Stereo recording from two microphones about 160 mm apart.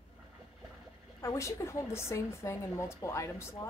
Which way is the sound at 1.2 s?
20° left (ahead or behind).